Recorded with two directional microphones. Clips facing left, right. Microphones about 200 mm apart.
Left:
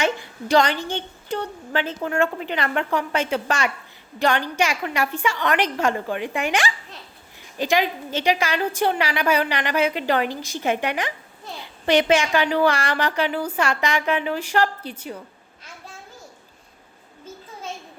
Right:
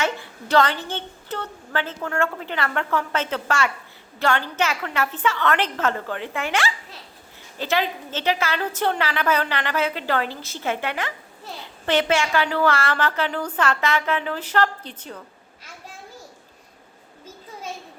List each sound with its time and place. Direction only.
0.0 s a woman's voice: 15° left (ahead or behind)